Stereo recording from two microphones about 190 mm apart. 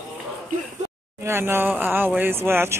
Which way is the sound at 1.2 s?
10° right (ahead or behind).